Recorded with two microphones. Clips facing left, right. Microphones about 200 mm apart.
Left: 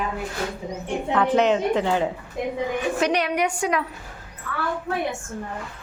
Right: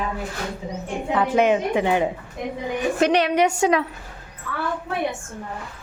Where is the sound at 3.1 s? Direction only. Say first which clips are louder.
Right 4 dB; 30° right (ahead or behind).